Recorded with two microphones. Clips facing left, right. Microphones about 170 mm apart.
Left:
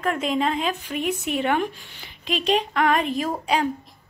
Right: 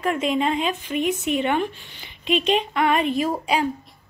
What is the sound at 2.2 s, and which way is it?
Speech, 40° left (ahead or behind).